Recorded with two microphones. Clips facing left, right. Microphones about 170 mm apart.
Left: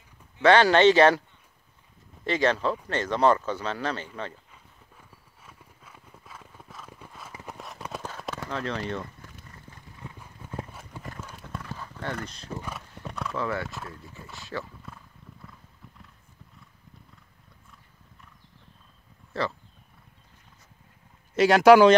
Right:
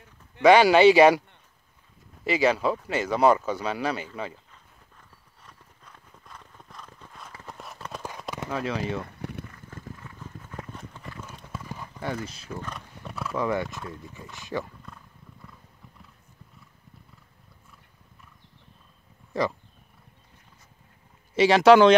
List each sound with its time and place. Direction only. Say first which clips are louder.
0.4 s speech: right 2 dB; 10° right (ahead or behind)
2.2 s speech: right 2 dB; 10° right (ahead or behind)
5.4 s clip-clop: left 1 dB; 5° left (ahead or behind)
8.3 s speech: right 2 dB; 10° right (ahead or behind)
9.0 s a sound: right 7 dB; 65° right (ahead or behind)
10.0 s clip-clop: even; 15° left (ahead or behind)
11.7 s clip-clop: right 3 dB; 10° right (ahead or behind)
12.6 s horse: left 1 dB; centre (ahead or behind)
13.4 s speech: right 4 dB; 15° right (ahead or behind)
19.4 s speech: right 3 dB; 15° right (ahead or behind)
21.4 s speech: even; centre (ahead or behind)